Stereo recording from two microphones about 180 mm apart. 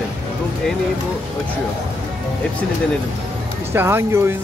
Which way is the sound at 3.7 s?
15° right (ahead or behind).